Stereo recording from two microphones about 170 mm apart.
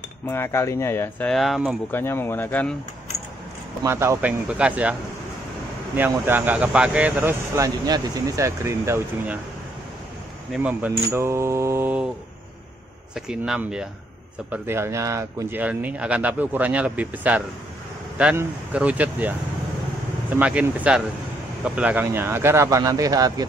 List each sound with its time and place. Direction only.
0.3 s speech: 15° left (ahead or behind)
1.3 s speech: centre (ahead or behind)
1.9 s speech: 15° left (ahead or behind)
3.8 s speech: 15° right (ahead or behind)
5.9 s speech: 10° right (ahead or behind)
10.5 s speech: 10° right (ahead or behind)
13.1 s speech: 5° right (ahead or behind); by 23.4 s 20° right (ahead or behind)